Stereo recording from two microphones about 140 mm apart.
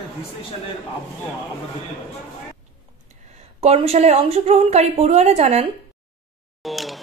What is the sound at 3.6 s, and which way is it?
A woman's voice, 45° right (ahead or behind).